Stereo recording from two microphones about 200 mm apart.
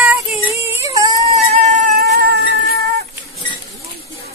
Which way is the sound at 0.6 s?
15° right (ahead or behind).